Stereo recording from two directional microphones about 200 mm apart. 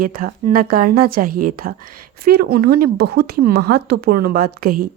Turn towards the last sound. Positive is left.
turn(degrees=-45)  # may be behind; listen again after turning